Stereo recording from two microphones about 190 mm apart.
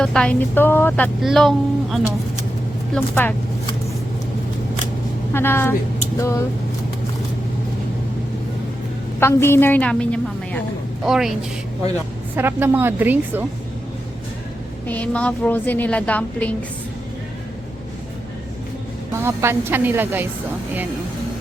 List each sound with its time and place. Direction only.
0.0 s a woman's voice: 5° left (ahead or behind)
5.3 s a woman's voice: 10° left (ahead or behind)
9.2 s a woman's voice: 15° left (ahead or behind)
12.4 s speech: 10° right (ahead or behind)
14.8 s a woman's voice: 5° left (ahead or behind)
19.2 s speech: 15° right (ahead or behind)